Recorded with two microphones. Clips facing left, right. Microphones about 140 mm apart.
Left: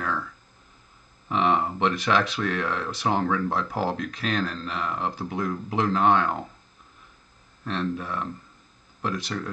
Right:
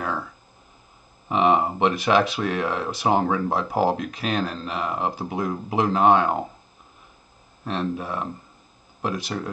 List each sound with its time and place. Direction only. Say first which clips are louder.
1.3 s speech: right 4 dB; 10° right (ahead or behind)
7.6 s speech: right 2 dB; 10° right (ahead or behind)